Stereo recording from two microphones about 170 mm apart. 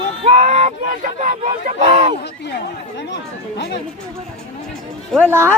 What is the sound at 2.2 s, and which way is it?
Speech, 75° left (ahead or behind).